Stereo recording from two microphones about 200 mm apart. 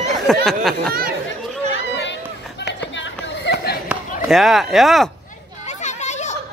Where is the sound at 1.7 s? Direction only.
60° left (ahead or behind).